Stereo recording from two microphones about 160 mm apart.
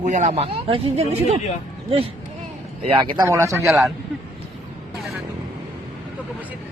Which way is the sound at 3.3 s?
20° right (ahead or behind).